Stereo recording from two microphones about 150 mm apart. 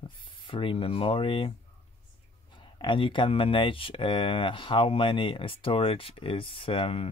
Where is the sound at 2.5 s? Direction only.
30° left (ahead or behind).